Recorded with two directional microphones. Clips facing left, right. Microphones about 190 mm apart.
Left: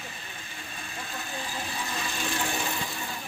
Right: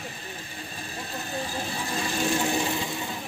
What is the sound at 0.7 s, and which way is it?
Vehicle, 35° right (ahead or behind).